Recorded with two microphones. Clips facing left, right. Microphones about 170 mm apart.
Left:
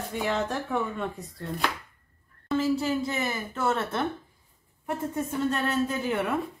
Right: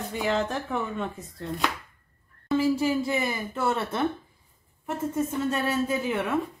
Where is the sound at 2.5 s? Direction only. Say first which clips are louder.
Right 2 dB; 10° right (ahead or behind).